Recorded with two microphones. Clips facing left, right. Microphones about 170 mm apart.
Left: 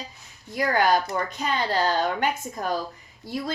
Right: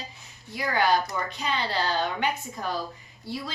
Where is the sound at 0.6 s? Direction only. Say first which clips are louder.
Left 3 dB; 45° left (ahead or behind).